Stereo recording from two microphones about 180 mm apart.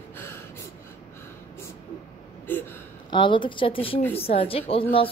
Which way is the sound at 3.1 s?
25° left (ahead or behind).